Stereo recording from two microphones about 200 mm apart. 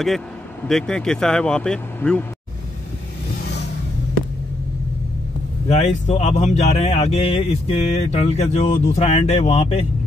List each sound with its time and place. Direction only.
0.7 s speech: 5° left (ahead or behind)
5.7 s speech: 35° left (ahead or behind)